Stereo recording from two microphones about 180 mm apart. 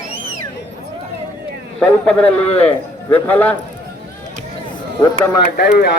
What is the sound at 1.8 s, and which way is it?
Speech, 10° left (ahead or behind).